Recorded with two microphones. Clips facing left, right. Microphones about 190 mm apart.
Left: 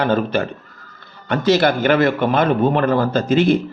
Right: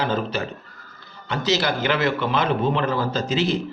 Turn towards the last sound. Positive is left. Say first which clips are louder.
# left 7 dB
turn(degrees=55)  # may be behind; listen again after turning